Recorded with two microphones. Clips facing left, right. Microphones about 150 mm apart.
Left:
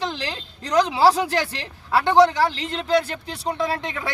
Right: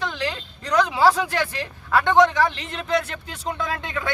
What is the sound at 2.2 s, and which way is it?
Speech, 35° left (ahead or behind).